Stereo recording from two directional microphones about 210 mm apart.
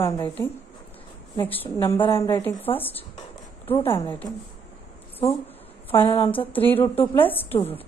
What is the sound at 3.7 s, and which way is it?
Speech, 25° left (ahead or behind).